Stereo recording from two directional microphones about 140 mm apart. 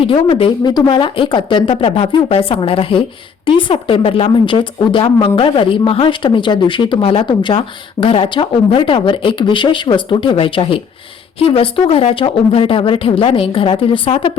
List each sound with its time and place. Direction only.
0.1 s speech: 40° left (ahead or behind)